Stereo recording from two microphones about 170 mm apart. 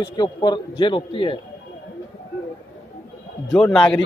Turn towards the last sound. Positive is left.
turn(degrees=10)  # may be behind; listen again after turning